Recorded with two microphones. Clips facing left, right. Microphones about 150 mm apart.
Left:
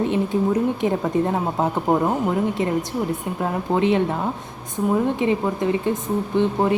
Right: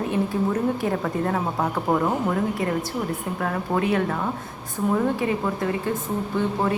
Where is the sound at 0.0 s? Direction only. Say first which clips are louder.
Left 3 dB; 20° left (ahead or behind).